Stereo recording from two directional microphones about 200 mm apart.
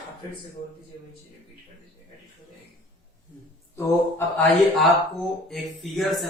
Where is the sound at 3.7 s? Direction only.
10° left (ahead or behind).